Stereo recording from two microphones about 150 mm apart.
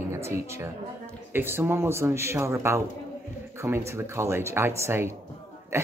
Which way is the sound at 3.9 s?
20° right (ahead or behind).